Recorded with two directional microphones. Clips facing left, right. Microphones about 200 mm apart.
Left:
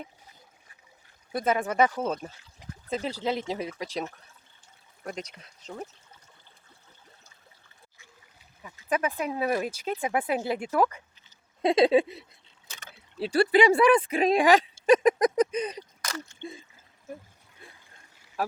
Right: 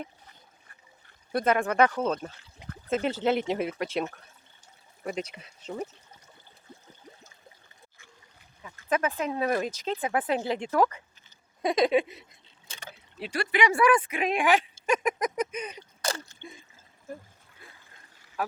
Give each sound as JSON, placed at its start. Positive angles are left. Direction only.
{"t": 1.3, "sound": "speech", "side_deg": 0}
{"t": 5.0, "sound": "speech", "side_deg": -5}
{"t": 8.9, "sound": "speech", "side_deg": 10}
{"t": 11.6, "sound": "speech", "side_deg": 25}
{"t": 14.8, "sound": "a sound", "side_deg": 35}
{"t": 16.0, "sound": "a sound", "side_deg": -30}